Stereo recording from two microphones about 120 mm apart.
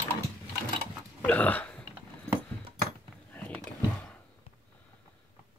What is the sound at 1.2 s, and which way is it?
Burping, 15° left (ahead or behind).